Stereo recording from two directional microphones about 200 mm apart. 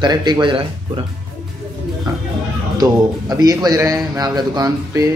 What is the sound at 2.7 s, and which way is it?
A man's voice, 20° right (ahead or behind).